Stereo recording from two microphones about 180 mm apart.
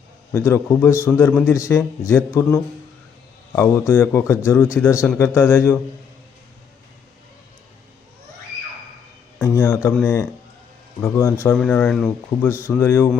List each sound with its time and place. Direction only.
0.3 s a man's voice: 15° left (ahead or behind)
9.4 s a sound: 15° left (ahead or behind)
11.0 s a man's voice: 15° left (ahead or behind)